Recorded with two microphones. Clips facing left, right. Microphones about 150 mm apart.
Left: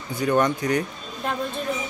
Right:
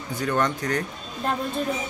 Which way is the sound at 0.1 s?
10° left (ahead or behind).